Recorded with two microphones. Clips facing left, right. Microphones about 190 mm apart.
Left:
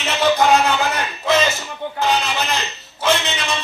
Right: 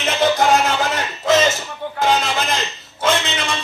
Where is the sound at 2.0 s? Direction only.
45° right (ahead or behind).